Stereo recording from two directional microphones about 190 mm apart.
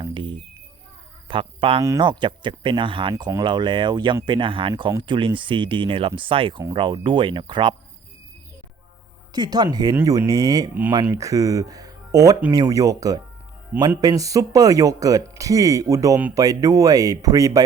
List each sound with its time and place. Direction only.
0.0 s a sound: 25° right (ahead or behind)
1.3 s speech: 30° right (ahead or behind)
9.3 s speech: 20° right (ahead or behind)